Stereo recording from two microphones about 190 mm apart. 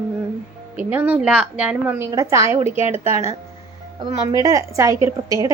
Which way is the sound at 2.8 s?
30° left (ahead or behind).